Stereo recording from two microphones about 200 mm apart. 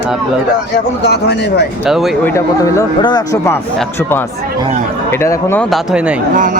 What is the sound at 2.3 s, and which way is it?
Speech, 15° left (ahead or behind).